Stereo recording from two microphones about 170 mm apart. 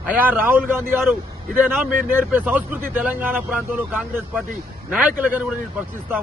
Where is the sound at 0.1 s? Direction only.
10° right (ahead or behind).